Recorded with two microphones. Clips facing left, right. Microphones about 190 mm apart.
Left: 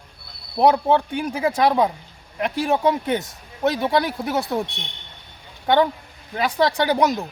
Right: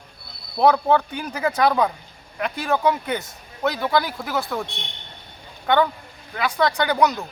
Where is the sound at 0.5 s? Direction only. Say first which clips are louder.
Left 1 dB; 25° left (ahead or behind).